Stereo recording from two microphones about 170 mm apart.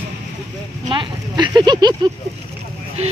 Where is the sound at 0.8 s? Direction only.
25° right (ahead or behind).